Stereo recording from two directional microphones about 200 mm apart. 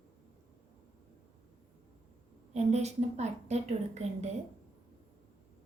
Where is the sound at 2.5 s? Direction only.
35° right (ahead or behind).